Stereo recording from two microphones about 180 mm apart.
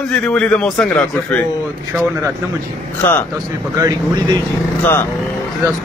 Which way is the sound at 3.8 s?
20° right (ahead or behind).